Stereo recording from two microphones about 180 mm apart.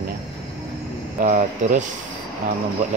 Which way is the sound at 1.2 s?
45° right (ahead or behind).